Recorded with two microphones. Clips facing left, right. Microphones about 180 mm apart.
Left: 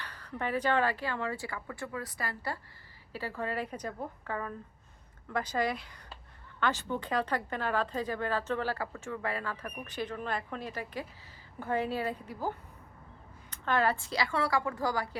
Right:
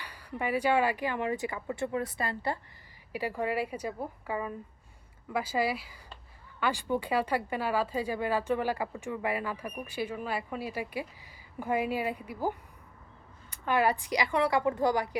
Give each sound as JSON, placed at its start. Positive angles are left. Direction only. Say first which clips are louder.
{"t": 0.0, "sound": "speech", "louder": "right 2 dB", "side_deg": -10}